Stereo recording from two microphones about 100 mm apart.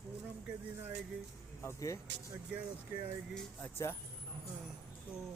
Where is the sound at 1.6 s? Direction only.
30° left (ahead or behind).